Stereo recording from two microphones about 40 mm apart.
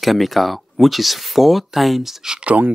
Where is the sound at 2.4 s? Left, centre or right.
Right.